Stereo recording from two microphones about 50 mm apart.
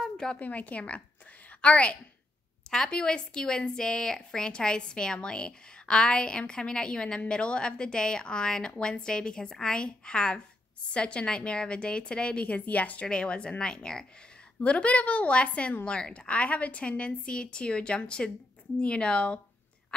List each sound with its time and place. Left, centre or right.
0.4 s a woman's voice: left
13.1 s a woman's voice: centre